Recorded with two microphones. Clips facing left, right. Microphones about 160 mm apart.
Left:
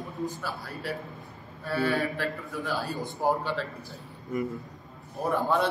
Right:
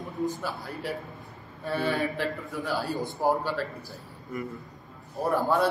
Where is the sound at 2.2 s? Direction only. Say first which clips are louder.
Right 1 dB; 15° right (ahead or behind).